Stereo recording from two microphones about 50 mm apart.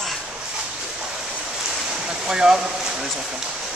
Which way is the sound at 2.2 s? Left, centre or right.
Centre.